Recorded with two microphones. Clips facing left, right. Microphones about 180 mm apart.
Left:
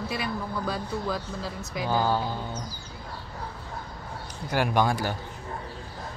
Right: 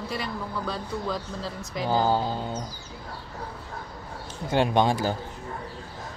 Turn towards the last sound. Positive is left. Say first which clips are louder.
# right 2 dB
turn(degrees=-25)  # may be behind; listen again after turning